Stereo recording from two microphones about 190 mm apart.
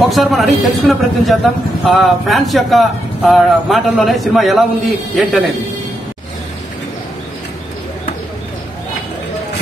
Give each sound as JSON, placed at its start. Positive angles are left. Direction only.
{"t": 0.0, "sound": "speech", "side_deg": 0}